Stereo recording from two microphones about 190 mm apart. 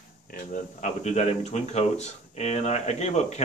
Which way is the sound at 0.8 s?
35° left (ahead or behind).